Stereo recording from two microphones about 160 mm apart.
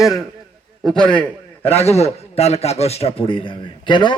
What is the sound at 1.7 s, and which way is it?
A man's voice, 40° left (ahead or behind).